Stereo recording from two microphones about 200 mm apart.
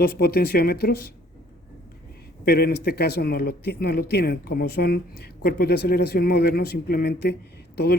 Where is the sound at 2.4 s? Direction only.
50° left (ahead or behind).